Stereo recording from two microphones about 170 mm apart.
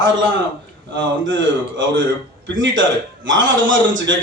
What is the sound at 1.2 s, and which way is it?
A man's voice, 90° right.